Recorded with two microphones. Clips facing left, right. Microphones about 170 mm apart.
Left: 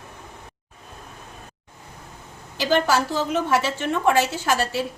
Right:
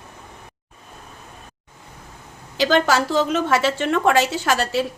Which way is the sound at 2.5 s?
90° right.